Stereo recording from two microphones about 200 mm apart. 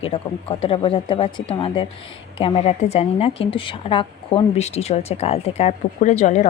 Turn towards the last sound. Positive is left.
turn(degrees=35)  # may be behind; listen again after turning